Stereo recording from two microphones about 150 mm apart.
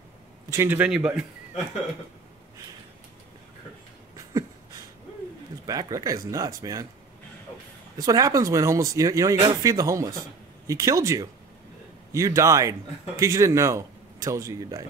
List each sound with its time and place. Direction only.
0.5 s a man's voice: 15° right (ahead or behind)
5.7 s a man's voice: 25° right (ahead or behind)
8.0 s a man's voice: 25° right (ahead or behind)